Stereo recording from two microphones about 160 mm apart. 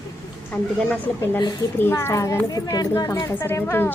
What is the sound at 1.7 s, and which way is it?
A woman's voice, 15° left (ahead or behind).